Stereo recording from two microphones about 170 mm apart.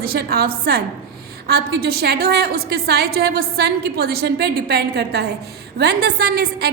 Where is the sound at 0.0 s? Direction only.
60° right (ahead or behind).